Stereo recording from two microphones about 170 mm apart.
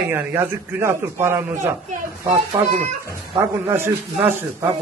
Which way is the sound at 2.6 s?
20° right (ahead or behind).